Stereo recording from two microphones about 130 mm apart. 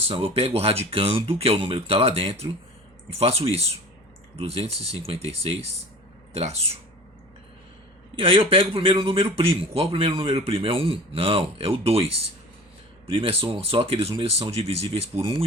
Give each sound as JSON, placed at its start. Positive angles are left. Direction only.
{"t": 0.1, "sound": "a man's voice", "side_deg": -50}
{"t": 8.1, "sound": "a man's voice", "side_deg": -45}
{"t": 13.1, "sound": "a man's voice", "side_deg": -45}